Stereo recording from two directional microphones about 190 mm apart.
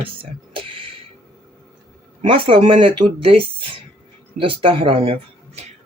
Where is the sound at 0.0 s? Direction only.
25° right (ahead or behind).